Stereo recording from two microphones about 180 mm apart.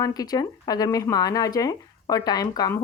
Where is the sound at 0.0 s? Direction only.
20° left (ahead or behind).